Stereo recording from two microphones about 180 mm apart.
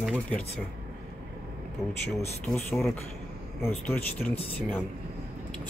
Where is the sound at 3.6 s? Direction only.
10° left (ahead or behind).